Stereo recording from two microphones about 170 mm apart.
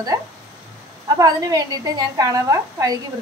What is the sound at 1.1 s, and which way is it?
A woman's voice, 20° right (ahead or behind).